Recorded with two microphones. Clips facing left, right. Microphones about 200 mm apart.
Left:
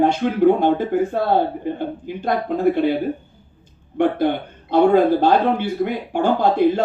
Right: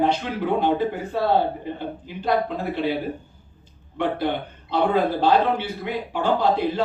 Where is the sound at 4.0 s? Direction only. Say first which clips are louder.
Left 6 dB; 50° left (ahead or behind).